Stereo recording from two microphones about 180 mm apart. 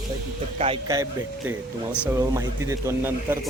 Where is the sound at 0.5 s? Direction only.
35° right (ahead or behind).